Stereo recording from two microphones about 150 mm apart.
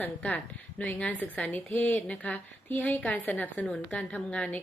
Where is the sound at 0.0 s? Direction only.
10° left (ahead or behind).